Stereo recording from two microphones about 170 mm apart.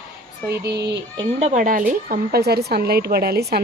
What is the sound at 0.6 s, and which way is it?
Speech, 85° right.